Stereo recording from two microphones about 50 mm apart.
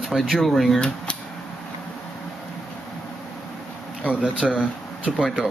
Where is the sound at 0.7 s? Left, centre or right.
Centre.